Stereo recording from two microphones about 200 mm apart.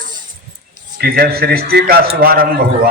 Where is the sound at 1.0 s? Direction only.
50° right (ahead or behind).